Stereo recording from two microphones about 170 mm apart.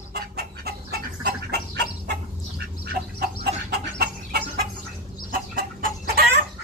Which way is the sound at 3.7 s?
70° right (ahead or behind).